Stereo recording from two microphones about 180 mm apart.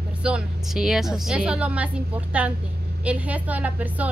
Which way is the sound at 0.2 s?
5° right (ahead or behind).